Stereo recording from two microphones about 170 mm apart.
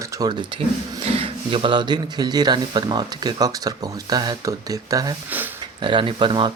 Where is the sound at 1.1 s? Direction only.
35° right (ahead or behind).